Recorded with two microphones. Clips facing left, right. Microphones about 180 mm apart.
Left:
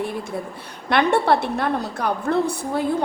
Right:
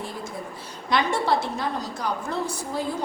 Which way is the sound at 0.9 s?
60° left (ahead or behind).